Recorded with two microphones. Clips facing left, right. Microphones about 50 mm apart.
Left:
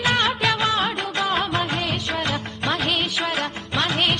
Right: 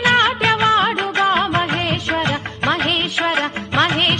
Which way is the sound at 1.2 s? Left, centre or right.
Right.